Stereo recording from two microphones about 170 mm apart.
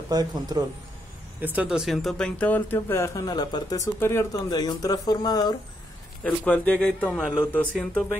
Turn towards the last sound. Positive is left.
turn(degrees=10)  # may be behind; listen again after turning